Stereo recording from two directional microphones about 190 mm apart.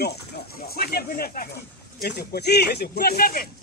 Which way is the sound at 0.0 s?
55° left (ahead or behind).